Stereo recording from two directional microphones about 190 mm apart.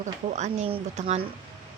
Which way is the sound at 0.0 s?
40° right (ahead or behind).